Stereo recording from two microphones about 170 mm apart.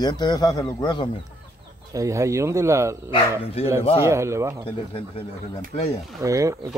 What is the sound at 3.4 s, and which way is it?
Speech, 35° left (ahead or behind).